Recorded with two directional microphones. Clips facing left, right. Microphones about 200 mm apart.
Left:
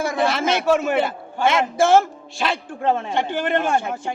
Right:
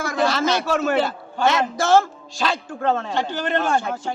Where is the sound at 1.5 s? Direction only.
25° left (ahead or behind).